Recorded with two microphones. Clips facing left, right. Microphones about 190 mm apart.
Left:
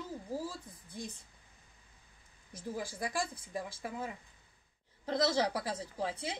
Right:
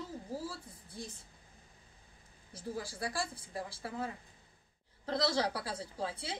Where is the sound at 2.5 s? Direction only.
15° left (ahead or behind).